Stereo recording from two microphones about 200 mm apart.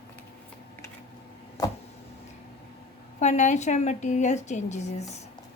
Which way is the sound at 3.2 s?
35° left (ahead or behind).